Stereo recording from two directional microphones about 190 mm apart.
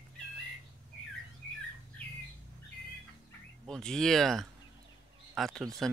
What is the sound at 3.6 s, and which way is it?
Speech, 5° left (ahead or behind).